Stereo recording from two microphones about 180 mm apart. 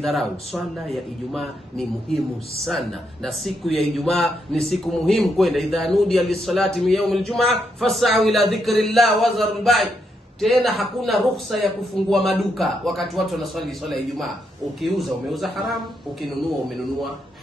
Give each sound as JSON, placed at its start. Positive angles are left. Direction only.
{"t": 0.0, "sound": "a man's voice", "side_deg": 0}